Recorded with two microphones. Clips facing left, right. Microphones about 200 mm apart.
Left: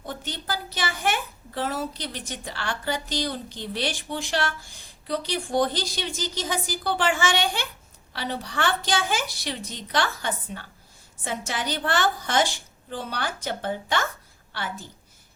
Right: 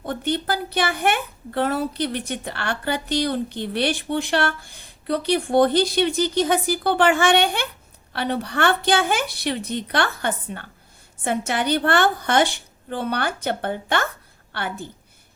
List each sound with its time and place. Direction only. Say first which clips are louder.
0.0 s a woman's voice: right 10 dB; 60° right (ahead or behind)